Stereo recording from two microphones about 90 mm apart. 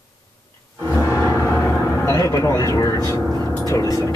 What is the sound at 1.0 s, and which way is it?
Vehicle, 35° left (ahead or behind).